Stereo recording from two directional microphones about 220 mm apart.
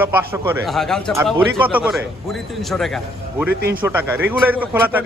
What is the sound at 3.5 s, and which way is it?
Speech, 45° right (ahead or behind).